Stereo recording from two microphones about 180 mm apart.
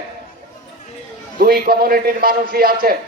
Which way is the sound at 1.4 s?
55° right (ahead or behind).